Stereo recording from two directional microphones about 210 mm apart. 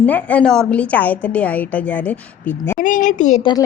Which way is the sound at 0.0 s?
5° left (ahead or behind).